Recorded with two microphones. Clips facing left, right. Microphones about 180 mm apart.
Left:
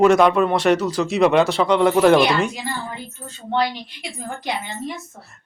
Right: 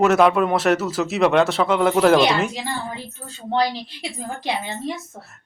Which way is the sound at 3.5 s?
30° right (ahead or behind).